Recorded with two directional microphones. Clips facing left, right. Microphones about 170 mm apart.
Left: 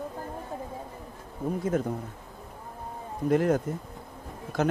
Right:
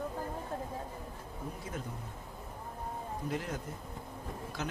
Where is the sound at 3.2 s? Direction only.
55° left (ahead or behind).